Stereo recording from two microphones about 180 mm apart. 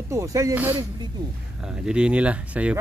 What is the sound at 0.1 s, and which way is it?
Speech, 15° right (ahead or behind).